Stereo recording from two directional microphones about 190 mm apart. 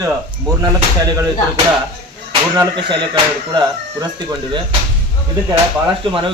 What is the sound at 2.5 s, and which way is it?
Speech, 20° right (ahead or behind).